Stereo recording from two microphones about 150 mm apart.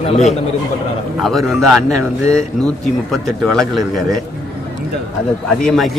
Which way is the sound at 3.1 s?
Centre (ahead or behind).